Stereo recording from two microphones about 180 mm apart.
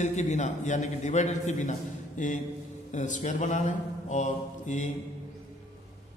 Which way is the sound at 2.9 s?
45° left (ahead or behind).